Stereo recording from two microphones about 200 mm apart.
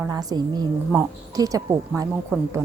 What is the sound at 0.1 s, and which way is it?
A woman's voice, 20° right (ahead or behind).